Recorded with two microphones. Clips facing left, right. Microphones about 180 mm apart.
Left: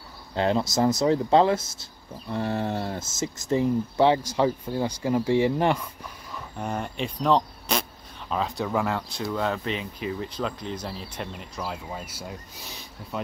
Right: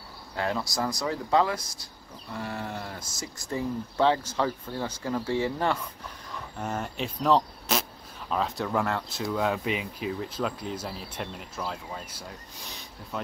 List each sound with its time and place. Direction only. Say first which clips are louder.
0.4 s speech: left 7 dB; 25° left (ahead or behind)
6.6 s speech: left 2 dB; centre (ahead or behind)
11.6 s speech: left 2 dB; 10° left (ahead or behind)